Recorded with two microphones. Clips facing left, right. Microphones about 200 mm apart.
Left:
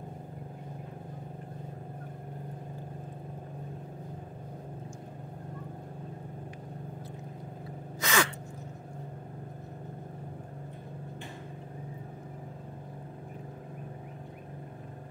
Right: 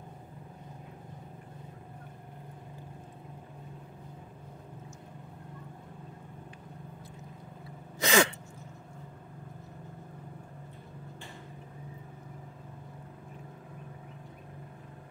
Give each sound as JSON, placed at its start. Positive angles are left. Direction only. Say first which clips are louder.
{"t": 8.0, "sound": "gasp", "louder": "right 4 dB", "side_deg": -25}